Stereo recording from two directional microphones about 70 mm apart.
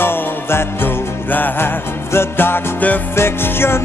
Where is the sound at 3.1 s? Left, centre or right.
Left.